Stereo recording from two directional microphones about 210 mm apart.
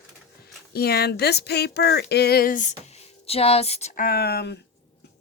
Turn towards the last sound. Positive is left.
turn(degrees=50)  # may be behind; listen again after turning